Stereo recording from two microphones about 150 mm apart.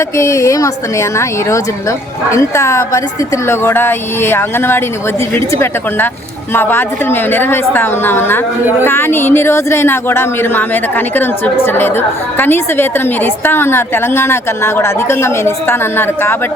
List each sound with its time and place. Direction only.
0.2 s speech: 20° left (ahead or behind)